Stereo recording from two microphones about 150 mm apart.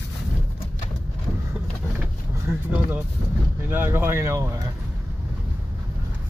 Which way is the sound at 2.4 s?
15° right (ahead or behind).